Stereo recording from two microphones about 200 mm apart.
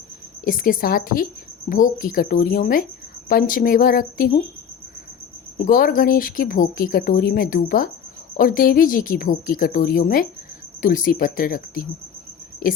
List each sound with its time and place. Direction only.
0.4 s speech: 45° left (ahead or behind)
5.5 s speech: 45° left (ahead or behind)